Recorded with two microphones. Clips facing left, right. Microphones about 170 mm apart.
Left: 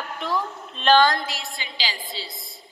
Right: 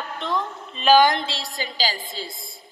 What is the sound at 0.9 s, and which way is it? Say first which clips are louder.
A woman's voice: right 2 dB; 15° right (ahead or behind).